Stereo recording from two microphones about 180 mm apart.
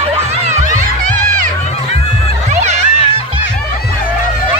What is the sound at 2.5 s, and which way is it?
Music, 40° right (ahead or behind).